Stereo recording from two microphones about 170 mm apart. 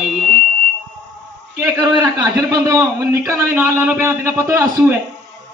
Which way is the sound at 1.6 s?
20° right (ahead or behind).